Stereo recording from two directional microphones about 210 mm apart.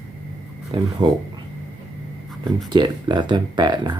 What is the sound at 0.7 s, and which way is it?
Speech, 20° right (ahead or behind).